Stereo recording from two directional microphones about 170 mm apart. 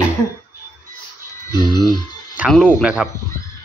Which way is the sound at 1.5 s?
25° left (ahead or behind).